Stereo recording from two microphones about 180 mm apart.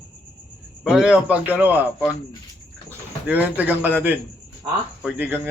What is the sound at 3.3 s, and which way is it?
Speech, 10° right (ahead or behind).